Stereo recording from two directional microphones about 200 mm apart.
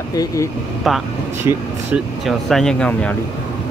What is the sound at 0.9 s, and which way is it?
Speech, centre (ahead or behind).